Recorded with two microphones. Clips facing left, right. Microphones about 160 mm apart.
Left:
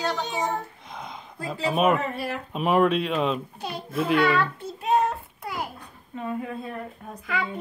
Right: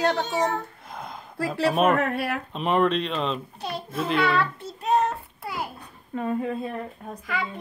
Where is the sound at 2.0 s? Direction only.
65° right (ahead or behind).